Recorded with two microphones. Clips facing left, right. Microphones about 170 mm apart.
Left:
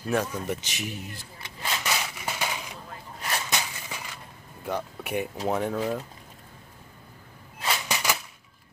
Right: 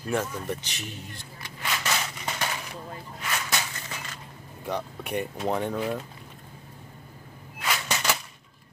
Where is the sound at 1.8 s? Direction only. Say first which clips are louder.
Even; 10° left (ahead or behind).